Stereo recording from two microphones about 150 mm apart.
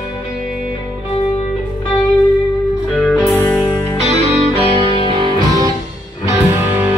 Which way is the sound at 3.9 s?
45° right (ahead or behind).